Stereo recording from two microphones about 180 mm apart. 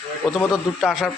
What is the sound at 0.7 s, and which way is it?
Speech, centre (ahead or behind).